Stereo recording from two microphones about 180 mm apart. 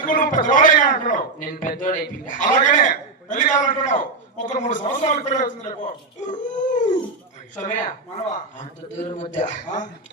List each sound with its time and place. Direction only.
0.0 s a man's voice: 50° left (ahead or behind)